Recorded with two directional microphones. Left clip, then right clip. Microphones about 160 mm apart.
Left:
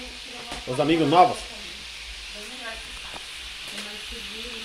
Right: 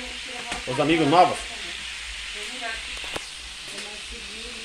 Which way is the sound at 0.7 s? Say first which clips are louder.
Even; centre (ahead or behind).